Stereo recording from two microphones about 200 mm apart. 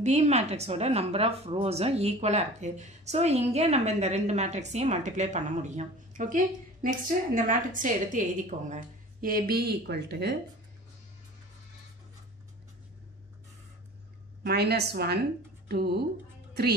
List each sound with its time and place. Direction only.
0.0 s a woman's voice: 35° right (ahead or behind); by 10.3 s 55° right (ahead or behind)
14.4 s a woman's voice: 55° right (ahead or behind)